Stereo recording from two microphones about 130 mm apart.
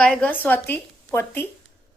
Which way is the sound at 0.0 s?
10° left (ahead or behind).